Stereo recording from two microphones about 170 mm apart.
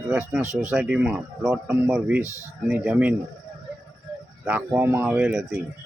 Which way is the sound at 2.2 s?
20° left (ahead or behind).